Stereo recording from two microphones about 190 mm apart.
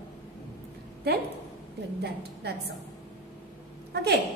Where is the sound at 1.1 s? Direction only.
60° right (ahead or behind).